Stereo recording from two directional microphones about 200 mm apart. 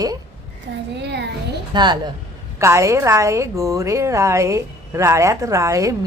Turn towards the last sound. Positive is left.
turn(degrees=-15)  # may be behind; listen again after turning